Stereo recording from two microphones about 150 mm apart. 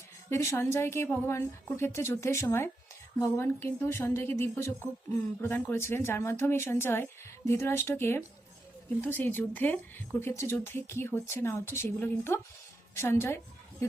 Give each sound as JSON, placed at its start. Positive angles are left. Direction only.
{"t": 0.3, "sound": "speech", "side_deg": 15}